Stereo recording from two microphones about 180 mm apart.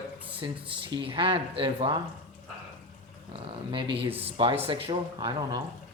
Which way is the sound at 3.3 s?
30° right (ahead or behind).